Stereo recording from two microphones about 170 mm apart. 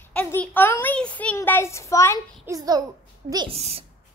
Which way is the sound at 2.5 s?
20° right (ahead or behind).